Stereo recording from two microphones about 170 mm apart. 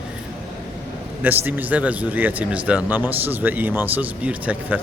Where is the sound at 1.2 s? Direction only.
10° right (ahead or behind).